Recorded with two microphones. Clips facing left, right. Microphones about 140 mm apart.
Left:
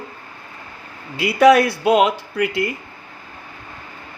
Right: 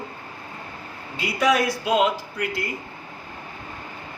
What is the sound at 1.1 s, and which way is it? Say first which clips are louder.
Speech: left 9 dB; 70° left (ahead or behind).